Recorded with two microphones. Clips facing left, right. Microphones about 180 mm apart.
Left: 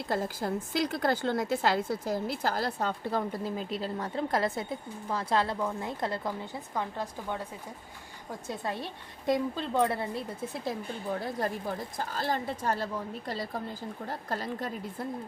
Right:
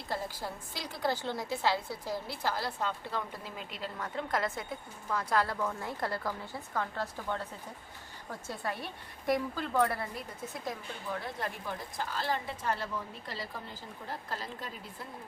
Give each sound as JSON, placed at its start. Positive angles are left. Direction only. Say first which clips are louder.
{"t": 0.4, "sound": "a woman's voice", "louder": "left 8 dB", "side_deg": 65}
{"t": 0.9, "sound": "a woman's voice", "louder": "left 2 dB", "side_deg": 50}
{"t": 10.7, "sound": "a woman's voice", "louder": "left 5 dB", "side_deg": 35}